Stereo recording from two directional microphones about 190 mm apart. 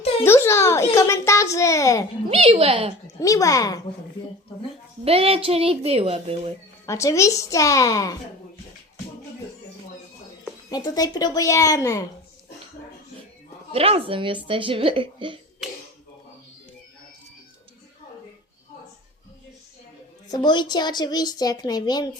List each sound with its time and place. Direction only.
0.3 s a child's voice: 15° left (ahead or behind)
2.3 s speech: 30° right (ahead or behind)
3.2 s a child's voice: 15° left (ahead or behind)
5.0 s speech: 30° right (ahead or behind)
6.8 s a child's voice: 15° left (ahead or behind)
10.7 s a woman's voice: 20° left (ahead or behind)
13.7 s speech: 30° right (ahead or behind)
20.2 s a woman's voice: 20° left (ahead or behind)